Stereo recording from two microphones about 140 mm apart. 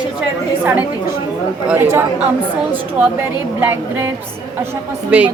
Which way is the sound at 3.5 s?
15° right (ahead or behind).